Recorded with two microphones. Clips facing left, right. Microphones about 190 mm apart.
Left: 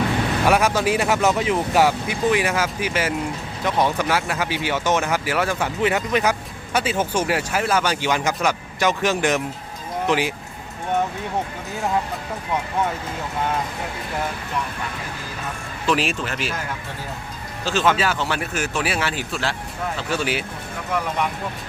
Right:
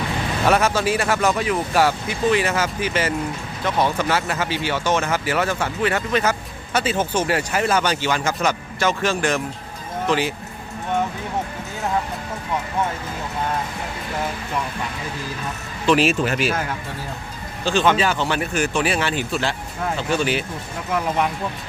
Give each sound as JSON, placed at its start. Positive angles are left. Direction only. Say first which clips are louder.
{"t": 0.4, "sound": "speech", "louder": "right 1 dB", "side_deg": 10}
{"t": 8.0, "sound": "speech", "louder": "even", "side_deg": 15}
{"t": 15.9, "sound": "speech", "louder": "right 5 dB", "side_deg": 0}
{"t": 17.7, "sound": "speech", "louder": "right 2 dB", "side_deg": 5}